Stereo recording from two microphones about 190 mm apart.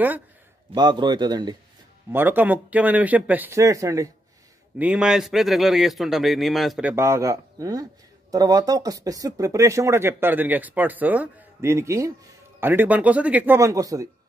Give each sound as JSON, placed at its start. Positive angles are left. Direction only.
{"t": 0.7, "sound": "a man's voice", "side_deg": -20}
{"t": 2.1, "sound": "speech", "side_deg": -10}
{"t": 4.7, "sound": "speech", "side_deg": -5}